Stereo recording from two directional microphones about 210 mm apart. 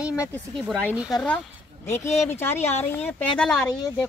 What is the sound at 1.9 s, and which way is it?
Speech, 10° left (ahead or behind).